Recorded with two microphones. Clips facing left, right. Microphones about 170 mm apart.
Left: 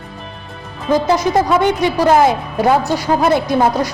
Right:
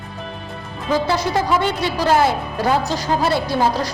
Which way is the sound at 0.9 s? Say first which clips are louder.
Left 5 dB; 15° left (ahead or behind).